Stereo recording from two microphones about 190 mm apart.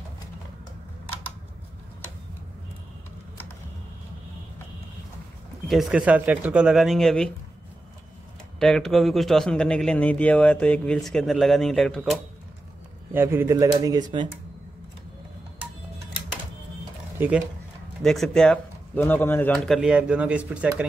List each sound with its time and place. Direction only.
5.7 s a man's voice: centre (ahead or behind)
8.5 s a man's voice: centre (ahead or behind)
13.1 s speech: 10° right (ahead or behind)
17.2 s speech: 10° right (ahead or behind)
18.0 s a man's voice: centre (ahead or behind)